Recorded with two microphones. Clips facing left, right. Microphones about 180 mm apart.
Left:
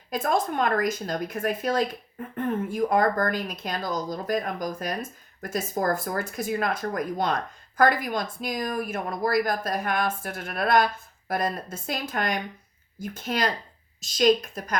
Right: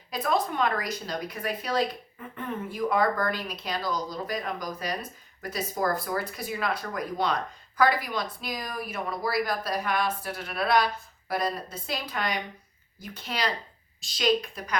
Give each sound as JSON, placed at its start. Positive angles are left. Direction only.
{"t": 0.1, "sound": "a woman's voice", "side_deg": 45}